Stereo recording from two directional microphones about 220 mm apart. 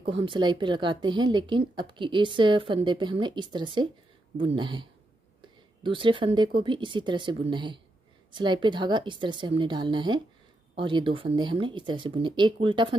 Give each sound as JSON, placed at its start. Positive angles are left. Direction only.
{"t": 0.0, "sound": "a woman's voice", "side_deg": -25}